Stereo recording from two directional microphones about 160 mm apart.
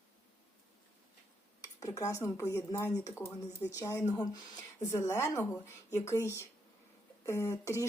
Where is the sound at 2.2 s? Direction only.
15° left (ahead or behind).